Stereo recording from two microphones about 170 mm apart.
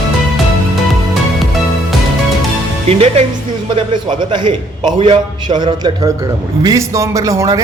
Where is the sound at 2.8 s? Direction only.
40° right (ahead or behind).